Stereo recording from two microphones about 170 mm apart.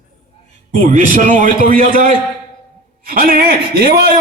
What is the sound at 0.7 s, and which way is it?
A man's voice, 50° right (ahead or behind).